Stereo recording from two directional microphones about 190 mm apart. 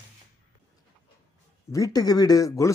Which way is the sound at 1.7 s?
20° left (ahead or behind).